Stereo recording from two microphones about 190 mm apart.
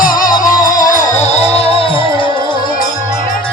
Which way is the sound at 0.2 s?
45° left (ahead or behind).